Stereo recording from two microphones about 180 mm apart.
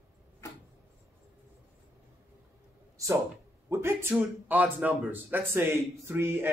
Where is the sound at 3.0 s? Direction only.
20° right (ahead or behind).